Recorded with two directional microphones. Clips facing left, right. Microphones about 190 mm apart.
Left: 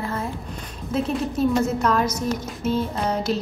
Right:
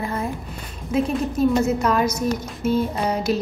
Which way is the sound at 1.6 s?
10° right (ahead or behind).